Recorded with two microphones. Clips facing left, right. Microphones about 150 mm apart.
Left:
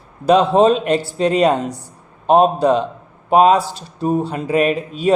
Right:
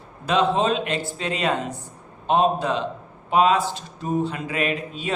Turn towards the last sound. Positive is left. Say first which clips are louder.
# left 9 dB
turn(degrees=40)  # may be behind; listen again after turning